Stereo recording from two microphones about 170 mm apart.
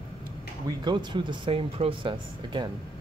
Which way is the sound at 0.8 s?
25° right (ahead or behind).